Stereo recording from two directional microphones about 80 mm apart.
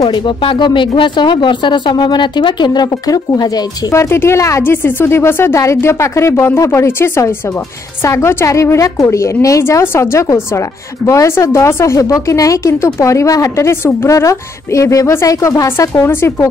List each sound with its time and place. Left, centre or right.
0.1 s speech: left
3.9 s a woman's voice: left